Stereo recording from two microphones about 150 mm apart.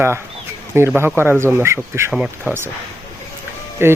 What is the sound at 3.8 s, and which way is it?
Speech, 15° right (ahead or behind).